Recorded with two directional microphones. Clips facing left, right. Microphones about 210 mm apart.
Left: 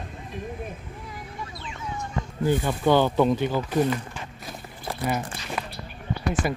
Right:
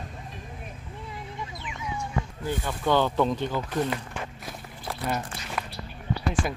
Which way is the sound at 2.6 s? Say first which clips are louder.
Left 2 dB; 10° left (ahead or behind).